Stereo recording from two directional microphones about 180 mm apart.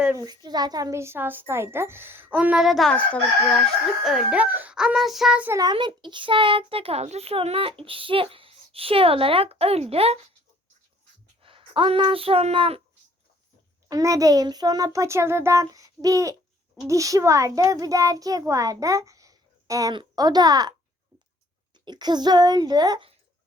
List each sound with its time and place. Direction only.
0.2 s speech: 20° right (ahead or behind); by 3.2 s 5° left (ahead or behind)
4.0 s child singing: 5° right (ahead or behind)
5.5 s a child's voice: 25° right (ahead or behind)
11.4 s speech: 30° right (ahead or behind)
13.9 s a child's voice: 20° right (ahead or behind)
21.8 s a child's voice: 25° right (ahead or behind)